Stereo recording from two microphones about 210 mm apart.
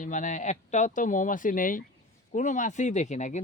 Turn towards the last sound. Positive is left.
turn(degrees=35)  # may be behind; listen again after turning